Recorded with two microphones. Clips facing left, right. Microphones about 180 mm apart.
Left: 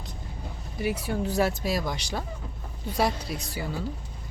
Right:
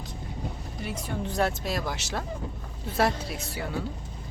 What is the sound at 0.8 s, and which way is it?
Speech, 5° left (ahead or behind).